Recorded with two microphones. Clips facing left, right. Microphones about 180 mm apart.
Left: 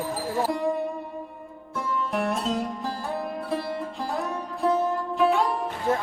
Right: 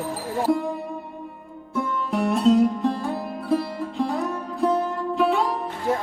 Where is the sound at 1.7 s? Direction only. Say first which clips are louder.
Right 3 dB; centre (ahead or behind).